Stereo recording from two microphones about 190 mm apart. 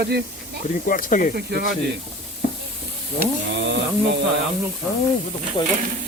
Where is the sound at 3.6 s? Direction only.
70° right (ahead or behind).